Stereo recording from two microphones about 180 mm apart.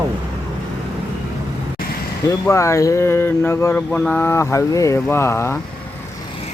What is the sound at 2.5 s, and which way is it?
Mantra, 15° left (ahead or behind).